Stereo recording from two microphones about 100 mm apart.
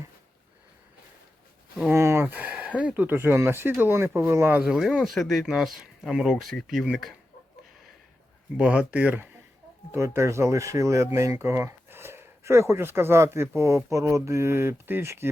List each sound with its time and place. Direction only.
1.9 s speech: 25° right (ahead or behind)
4.6 s speech: 5° right (ahead or behind)
8.5 s speech: 10° right (ahead or behind)